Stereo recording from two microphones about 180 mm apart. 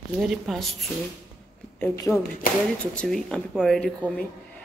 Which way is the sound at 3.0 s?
Centre (ahead or behind).